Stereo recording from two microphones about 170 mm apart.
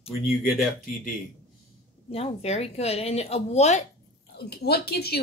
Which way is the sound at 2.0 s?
35° left (ahead or behind).